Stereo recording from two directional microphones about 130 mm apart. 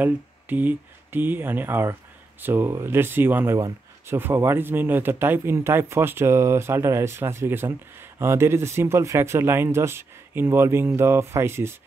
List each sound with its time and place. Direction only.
0.0 s speech: 15° right (ahead or behind)